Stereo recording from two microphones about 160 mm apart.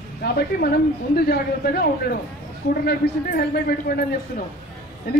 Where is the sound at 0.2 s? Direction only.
75° left (ahead or behind).